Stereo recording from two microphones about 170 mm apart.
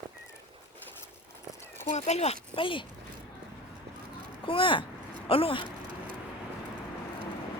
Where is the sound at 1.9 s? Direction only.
40° left (ahead or behind).